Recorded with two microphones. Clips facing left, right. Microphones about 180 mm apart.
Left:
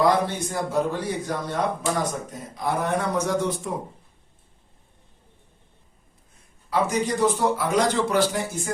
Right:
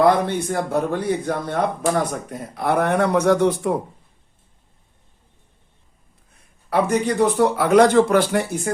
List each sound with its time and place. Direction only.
0.0 s a man's voice: 60° right (ahead or behind)
6.7 s a man's voice: 60° right (ahead or behind)